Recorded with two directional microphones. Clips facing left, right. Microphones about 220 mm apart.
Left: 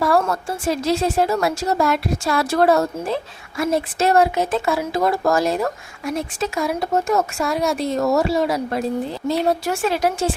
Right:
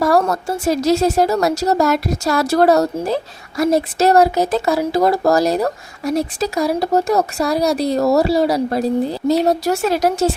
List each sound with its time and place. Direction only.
0.0 s speech: 40° right (ahead or behind)